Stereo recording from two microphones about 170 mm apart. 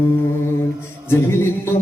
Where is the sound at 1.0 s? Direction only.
15° left (ahead or behind).